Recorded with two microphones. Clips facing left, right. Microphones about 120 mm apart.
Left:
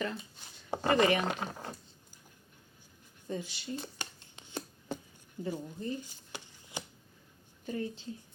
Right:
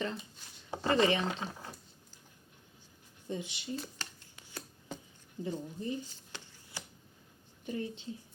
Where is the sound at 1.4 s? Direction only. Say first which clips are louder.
Left 2 dB; 45° left (ahead or behind).